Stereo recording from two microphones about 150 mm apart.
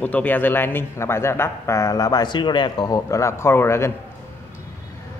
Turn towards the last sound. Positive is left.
turn(degrees=15)  # may be behind; listen again after turning